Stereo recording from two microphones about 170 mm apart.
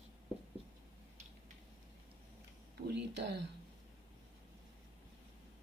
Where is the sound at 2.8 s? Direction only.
85° right.